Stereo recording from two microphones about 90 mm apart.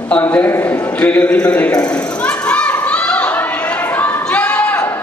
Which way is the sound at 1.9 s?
15° left (ahead or behind).